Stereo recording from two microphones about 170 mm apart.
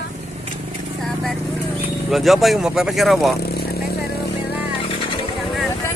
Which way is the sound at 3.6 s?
70° left (ahead or behind).